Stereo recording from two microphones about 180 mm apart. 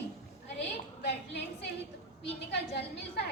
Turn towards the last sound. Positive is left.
turn(degrees=70)  # may be behind; listen again after turning